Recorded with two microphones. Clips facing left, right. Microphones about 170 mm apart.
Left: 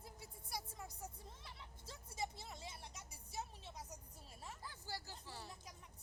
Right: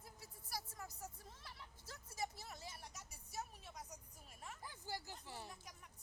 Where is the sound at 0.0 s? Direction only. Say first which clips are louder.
Left 3 dB; 25° left (ahead or behind).